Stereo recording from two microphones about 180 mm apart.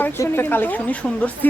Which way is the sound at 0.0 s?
10° left (ahead or behind).